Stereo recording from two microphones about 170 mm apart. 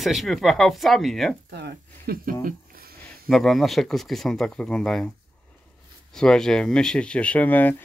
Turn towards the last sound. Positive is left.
turn(degrees=10)  # may be behind; listen again after turning